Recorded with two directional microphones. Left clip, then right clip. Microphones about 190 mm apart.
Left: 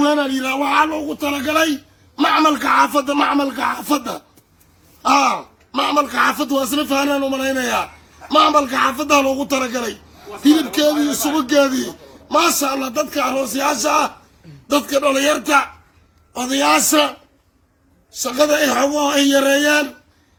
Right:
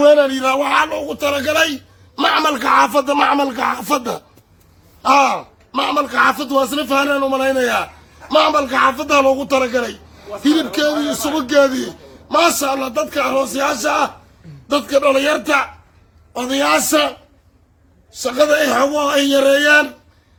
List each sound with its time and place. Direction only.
0.0 s a man's voice: 35° right (ahead or behind); by 4.2 s 50° right (ahead or behind)
5.0 s a man's voice: 25° right (ahead or behind)
18.1 s speech: 20° right (ahead or behind)